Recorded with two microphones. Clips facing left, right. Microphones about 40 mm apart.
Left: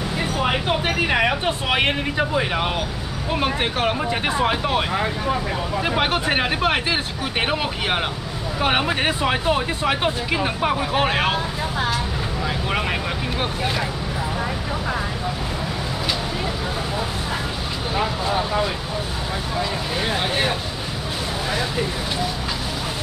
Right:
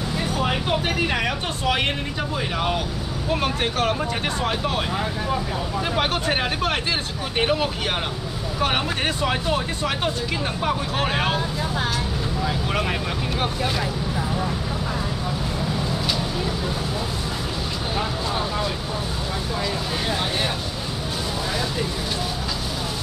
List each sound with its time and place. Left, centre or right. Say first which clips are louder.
0.2 s speech: left 2 dB; left
17.9 s speech: left 5 dB; centre
20.1 s speech: left 3 dB; left